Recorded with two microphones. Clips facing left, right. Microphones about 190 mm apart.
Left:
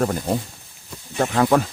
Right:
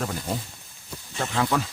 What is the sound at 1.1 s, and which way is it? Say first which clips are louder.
Speech: left 7 dB; 50° left (ahead or behind).